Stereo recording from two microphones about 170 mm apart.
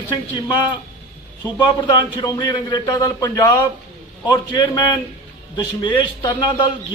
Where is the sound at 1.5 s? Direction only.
25° left (ahead or behind).